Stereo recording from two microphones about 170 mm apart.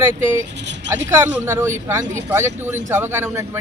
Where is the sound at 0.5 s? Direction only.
90° right.